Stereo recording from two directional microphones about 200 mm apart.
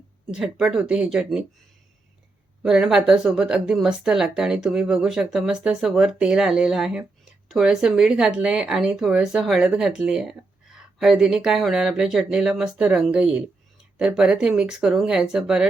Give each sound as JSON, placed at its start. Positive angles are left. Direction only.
{"t": 0.3, "sound": "a woman's voice", "side_deg": -5}
{"t": 2.6, "sound": "a woman's voice", "side_deg": -5}